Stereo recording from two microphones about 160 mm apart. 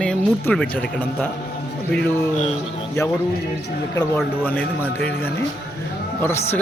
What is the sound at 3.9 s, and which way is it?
A man's voice, 15° left (ahead or behind).